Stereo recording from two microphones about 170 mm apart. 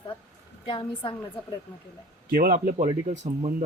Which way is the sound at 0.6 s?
30° left (ahead or behind).